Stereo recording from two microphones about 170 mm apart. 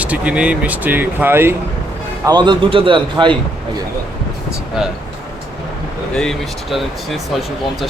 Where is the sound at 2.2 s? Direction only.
25° right (ahead or behind).